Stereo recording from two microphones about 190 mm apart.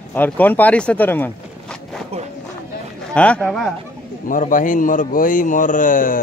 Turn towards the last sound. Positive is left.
turn(degrees=45)  # may be behind; listen again after turning